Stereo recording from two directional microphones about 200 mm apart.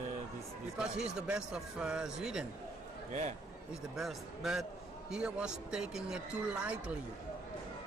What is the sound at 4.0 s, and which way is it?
Speech, centre (ahead or behind).